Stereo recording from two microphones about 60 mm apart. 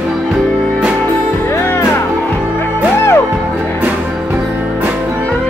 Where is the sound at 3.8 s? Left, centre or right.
Right.